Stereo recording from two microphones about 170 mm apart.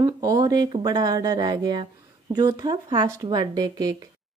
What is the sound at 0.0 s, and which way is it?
Speech, 20° right (ahead or behind).